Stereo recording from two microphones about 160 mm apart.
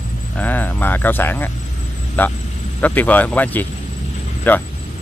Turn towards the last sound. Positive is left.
turn(degrees=10)  # may be behind; listen again after turning